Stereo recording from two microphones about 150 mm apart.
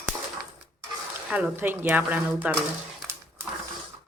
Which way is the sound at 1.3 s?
5° right (ahead or behind).